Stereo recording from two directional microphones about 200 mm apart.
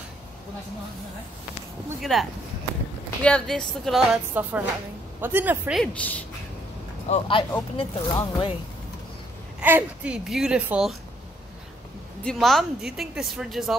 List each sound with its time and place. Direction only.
2.0 s speech: centre (ahead or behind)
5.9 s a woman's voice: 5° left (ahead or behind)
7.1 s speech: 25° left (ahead or behind)
9.6 s speech: 10° right (ahead or behind)
12.2 s speech: centre (ahead or behind)